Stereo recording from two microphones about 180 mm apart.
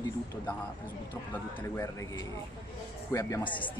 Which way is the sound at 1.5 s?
15° left (ahead or behind).